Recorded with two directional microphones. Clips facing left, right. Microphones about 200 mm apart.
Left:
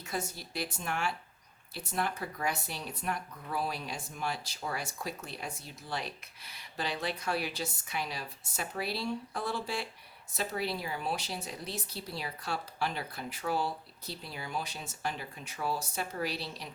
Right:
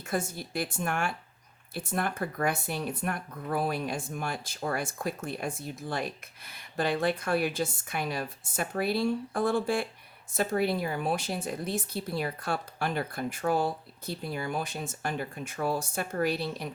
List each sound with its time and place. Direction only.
0.0 s speech: 50° right (ahead or behind)